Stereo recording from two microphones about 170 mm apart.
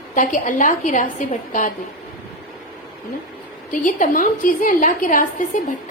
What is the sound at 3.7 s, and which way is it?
A woman's voice, 50° left (ahead or behind).